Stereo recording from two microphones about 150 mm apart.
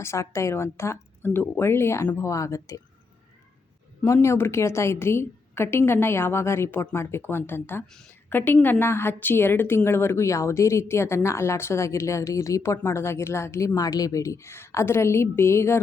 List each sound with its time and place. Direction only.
0.0 s a woman's voice: 20° left (ahead or behind)
4.0 s a woman's voice: 20° left (ahead or behind)